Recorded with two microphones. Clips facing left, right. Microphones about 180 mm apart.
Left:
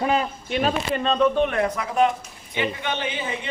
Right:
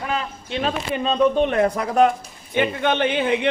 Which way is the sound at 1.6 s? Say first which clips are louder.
Right 4 dB; 40° right (ahead or behind).